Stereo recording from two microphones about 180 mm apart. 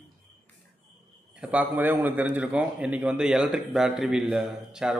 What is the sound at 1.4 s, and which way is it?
A man's voice, 10° right (ahead or behind).